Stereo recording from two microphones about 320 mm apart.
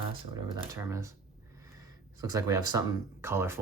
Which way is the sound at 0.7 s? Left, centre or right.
Centre.